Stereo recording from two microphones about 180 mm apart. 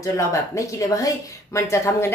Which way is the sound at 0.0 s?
15° left (ahead or behind).